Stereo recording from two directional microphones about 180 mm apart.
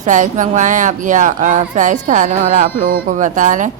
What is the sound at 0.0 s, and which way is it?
A woman's voice, 45° right (ahead or behind).